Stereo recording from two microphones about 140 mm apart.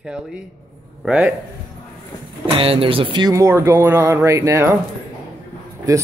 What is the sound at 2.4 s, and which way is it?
Speech, 40° right (ahead or behind).